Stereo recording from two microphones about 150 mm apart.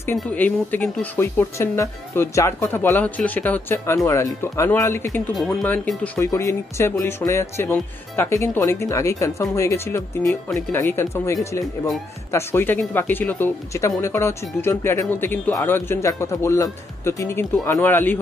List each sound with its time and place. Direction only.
0.2 s speech: 10° left (ahead or behind)
5.3 s speech: centre (ahead or behind)